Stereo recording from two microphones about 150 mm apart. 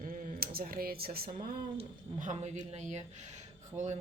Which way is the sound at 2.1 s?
55° right (ahead or behind).